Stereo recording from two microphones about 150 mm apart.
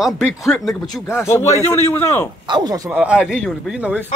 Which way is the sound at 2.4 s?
30° right (ahead or behind).